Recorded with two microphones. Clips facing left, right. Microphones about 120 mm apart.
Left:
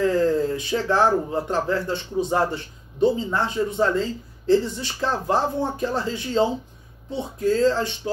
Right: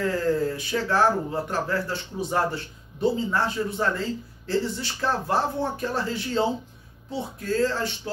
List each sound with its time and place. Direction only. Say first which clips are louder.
0.0 s speech: left 4 dB; 20° left (ahead or behind)
7.4 s speech: left 5 dB; 20° left (ahead or behind)